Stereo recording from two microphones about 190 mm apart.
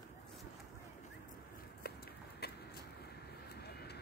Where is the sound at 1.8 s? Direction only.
55° left (ahead or behind).